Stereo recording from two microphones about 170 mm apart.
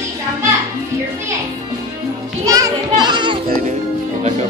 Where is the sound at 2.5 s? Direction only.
25° right (ahead or behind).